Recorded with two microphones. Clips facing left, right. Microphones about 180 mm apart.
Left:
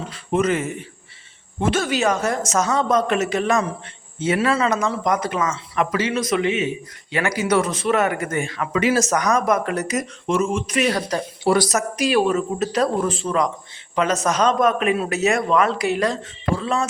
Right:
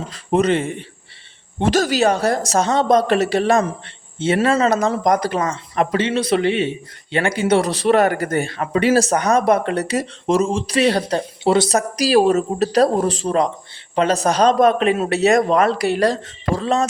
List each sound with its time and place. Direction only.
0.1 s speech: 35° right (ahead or behind)